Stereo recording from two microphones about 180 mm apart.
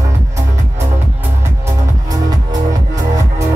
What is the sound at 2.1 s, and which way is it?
Music, 20° right (ahead or behind).